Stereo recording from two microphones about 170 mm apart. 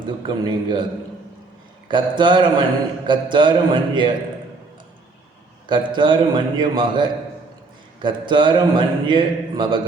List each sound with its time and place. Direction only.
0.0 s a man's voice: 30° right (ahead or behind)
1.9 s a man's voice: 30° right (ahead or behind)
5.6 s a man's voice: 30° right (ahead or behind)